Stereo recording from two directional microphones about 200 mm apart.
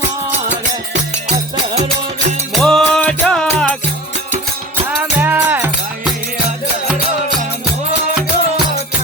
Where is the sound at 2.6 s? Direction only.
5° left (ahead or behind).